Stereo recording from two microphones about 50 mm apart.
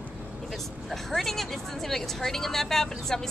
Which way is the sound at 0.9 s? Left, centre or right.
Centre.